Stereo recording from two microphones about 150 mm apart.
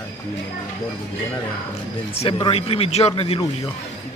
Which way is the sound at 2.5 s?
40° left (ahead or behind).